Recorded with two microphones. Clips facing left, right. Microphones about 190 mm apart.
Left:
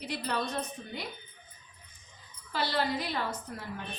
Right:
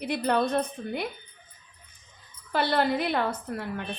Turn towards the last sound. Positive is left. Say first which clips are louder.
# right 7 dB
turn(degrees=-60)  # may be behind; listen again after turning